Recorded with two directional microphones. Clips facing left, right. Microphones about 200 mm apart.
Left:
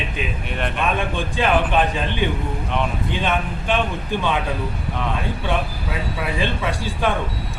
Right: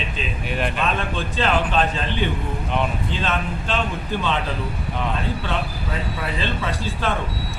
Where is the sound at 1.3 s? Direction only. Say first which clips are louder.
Left 2 dB; 15° left (ahead or behind).